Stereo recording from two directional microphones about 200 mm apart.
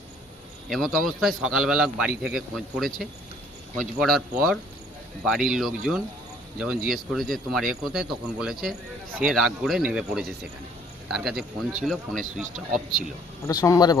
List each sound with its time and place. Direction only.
0.7 s a man's voice: centre (ahead or behind)
5.2 s a man's voice: centre (ahead or behind)
13.5 s speech: 20° left (ahead or behind)